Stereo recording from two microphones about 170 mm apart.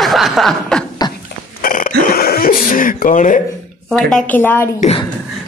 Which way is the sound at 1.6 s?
55° left (ahead or behind).